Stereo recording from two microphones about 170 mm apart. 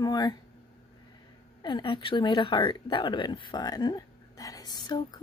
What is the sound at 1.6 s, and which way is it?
Speech, 30° left (ahead or behind).